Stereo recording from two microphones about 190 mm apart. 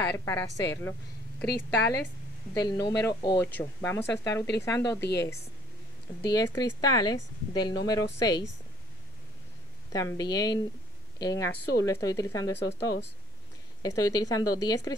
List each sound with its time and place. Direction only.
0.0 s a woman's voice: 10° left (ahead or behind)
1.4 s a woman's voice: 60° left (ahead or behind)
2.6 s speech: 20° left (ahead or behind)
5.0 s a woman's voice: 60° left (ahead or behind)
6.2 s speech: 20° left (ahead or behind)
9.9 s speech: 20° left (ahead or behind)
12.5 s a woman's voice: 65° left (ahead or behind)
13.8 s speech: 20° left (ahead or behind)